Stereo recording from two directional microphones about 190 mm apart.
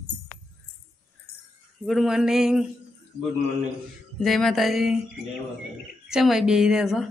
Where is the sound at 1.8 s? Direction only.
Centre (ahead or behind).